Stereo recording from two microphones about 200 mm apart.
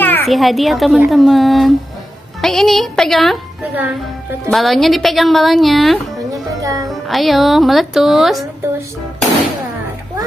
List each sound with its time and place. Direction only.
0.0 s a woman's voice: 5° left (ahead or behind)
6.6 s speech: 15° right (ahead or behind)
6.9 s a woman's voice: centre (ahead or behind)